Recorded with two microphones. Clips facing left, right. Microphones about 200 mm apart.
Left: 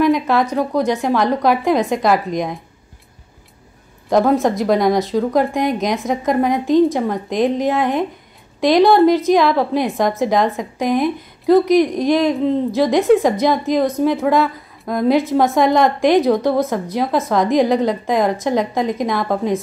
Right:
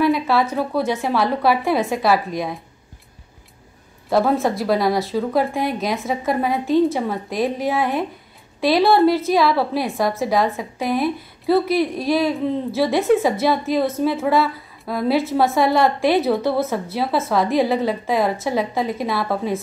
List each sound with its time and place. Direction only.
0.0 s a woman's voice: 15° left (ahead or behind)
4.1 s a woman's voice: 15° left (ahead or behind)